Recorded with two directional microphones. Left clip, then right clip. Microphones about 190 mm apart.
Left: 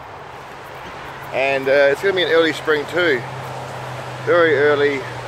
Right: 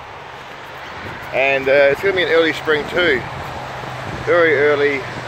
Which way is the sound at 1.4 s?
15° right (ahead or behind).